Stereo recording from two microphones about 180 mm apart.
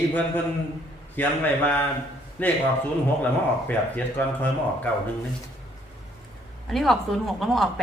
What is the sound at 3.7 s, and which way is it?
A man's voice, 10° left (ahead or behind).